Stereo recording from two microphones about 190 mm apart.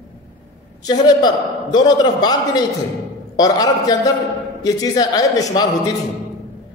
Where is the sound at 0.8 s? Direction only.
20° left (ahead or behind).